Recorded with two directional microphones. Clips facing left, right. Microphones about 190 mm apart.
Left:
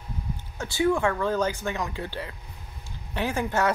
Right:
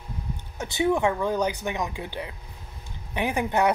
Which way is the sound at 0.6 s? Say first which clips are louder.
Even; 20° right (ahead or behind).